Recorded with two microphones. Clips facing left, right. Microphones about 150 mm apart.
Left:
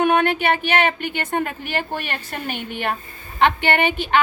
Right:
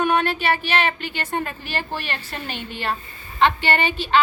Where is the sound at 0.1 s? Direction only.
55° left (ahead or behind).